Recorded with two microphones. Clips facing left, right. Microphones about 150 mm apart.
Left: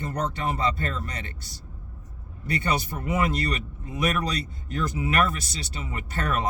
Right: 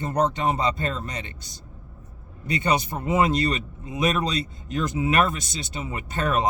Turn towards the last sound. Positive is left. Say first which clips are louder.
# right 4 dB
turn(degrees=-20)  # may be behind; listen again after turning